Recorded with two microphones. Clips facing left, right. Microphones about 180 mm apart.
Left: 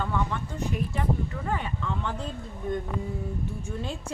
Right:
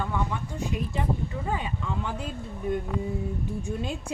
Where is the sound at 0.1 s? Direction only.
15° right (ahead or behind).